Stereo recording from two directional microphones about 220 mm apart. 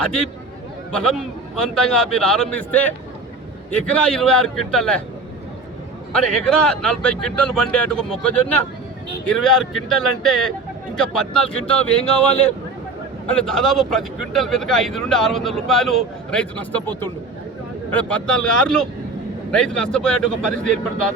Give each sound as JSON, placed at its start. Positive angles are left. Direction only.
{"t": 0.9, "sound": "speech", "side_deg": 5}
{"t": 6.1, "sound": "speech", "side_deg": 5}
{"t": 19.5, "sound": "speech", "side_deg": 5}